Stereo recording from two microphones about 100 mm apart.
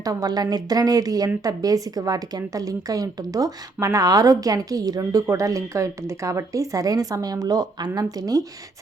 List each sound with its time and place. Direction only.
0.0 s a woman's voice: 40° right (ahead or behind)